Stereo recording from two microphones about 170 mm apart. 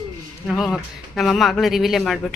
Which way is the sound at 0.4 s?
Centre (ahead or behind).